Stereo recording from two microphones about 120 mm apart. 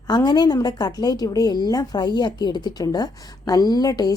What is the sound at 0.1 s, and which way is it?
A woman's voice, 35° left (ahead or behind).